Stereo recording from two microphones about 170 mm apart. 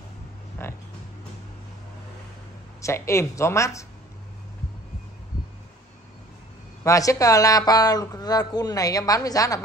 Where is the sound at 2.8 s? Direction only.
15° left (ahead or behind).